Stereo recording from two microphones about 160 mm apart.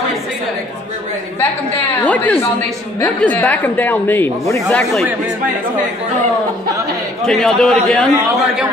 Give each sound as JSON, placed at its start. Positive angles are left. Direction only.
{"t": 1.4, "sound": "a woman's voice", "side_deg": 10}
{"t": 7.2, "sound": "a man's voice", "side_deg": 5}